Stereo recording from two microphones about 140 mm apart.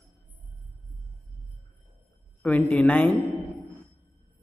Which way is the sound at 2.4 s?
10° left (ahead or behind).